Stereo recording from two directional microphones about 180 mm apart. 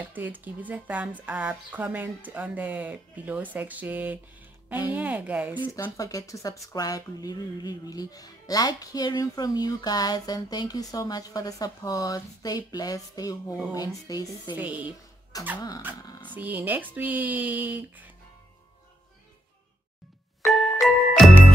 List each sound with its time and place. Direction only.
0.0 s speech: 10° right (ahead or behind)
5.6 s speech: 20° left (ahead or behind)
14.5 s speech: 10° right (ahead or behind)
15.3 s dog: 20° left (ahead or behind)
16.3 s speech: 10° right (ahead or behind)
20.8 s jingle: centre (ahead or behind)